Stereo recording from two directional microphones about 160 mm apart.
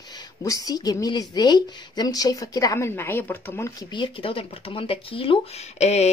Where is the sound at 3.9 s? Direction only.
30° left (ahead or behind).